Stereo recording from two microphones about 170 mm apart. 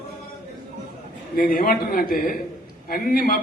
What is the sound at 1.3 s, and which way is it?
A man's voice, 55° left (ahead or behind).